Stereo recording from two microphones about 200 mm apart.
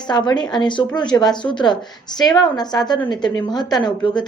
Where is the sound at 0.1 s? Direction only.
20° left (ahead or behind).